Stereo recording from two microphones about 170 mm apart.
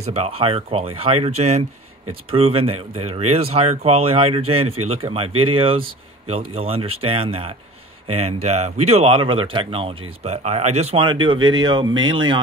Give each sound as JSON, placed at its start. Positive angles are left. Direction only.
{"t": 0.0, "sound": "speech", "side_deg": -35}